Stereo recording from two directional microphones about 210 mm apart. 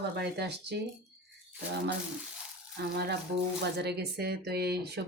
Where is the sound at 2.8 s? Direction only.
50° right (ahead or behind).